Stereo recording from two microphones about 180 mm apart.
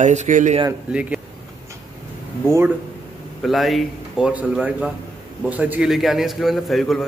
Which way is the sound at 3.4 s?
Centre (ahead or behind).